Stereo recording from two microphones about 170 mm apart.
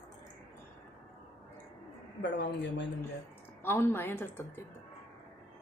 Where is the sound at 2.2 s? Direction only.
90° left.